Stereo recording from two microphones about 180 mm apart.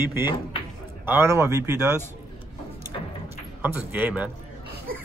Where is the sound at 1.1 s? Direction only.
15° right (ahead or behind).